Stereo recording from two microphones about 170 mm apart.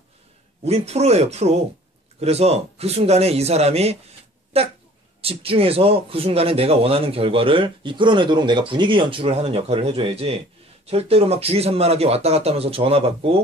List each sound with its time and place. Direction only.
0.7 s a man's voice: 40° right (ahead or behind)